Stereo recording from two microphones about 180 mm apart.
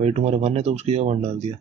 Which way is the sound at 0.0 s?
35° right (ahead or behind).